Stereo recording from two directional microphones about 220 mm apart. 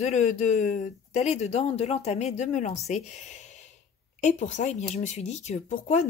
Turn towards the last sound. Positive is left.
turn(degrees=30)  # may be behind; listen again after turning